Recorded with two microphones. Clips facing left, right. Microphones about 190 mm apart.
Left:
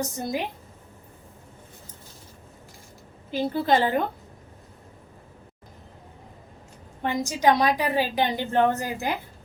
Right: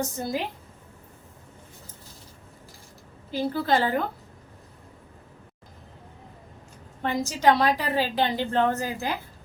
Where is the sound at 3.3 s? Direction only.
20° left (ahead or behind).